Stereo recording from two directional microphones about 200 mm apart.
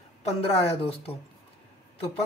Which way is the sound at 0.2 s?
30° left (ahead or behind).